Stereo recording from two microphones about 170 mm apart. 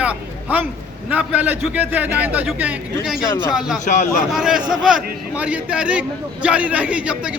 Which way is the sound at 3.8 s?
50° left (ahead or behind).